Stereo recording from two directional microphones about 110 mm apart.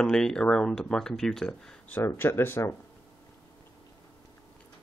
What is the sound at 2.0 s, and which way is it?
Speech, 20° left (ahead or behind).